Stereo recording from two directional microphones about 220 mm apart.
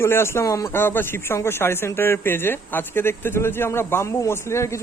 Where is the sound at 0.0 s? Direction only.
10° left (ahead or behind).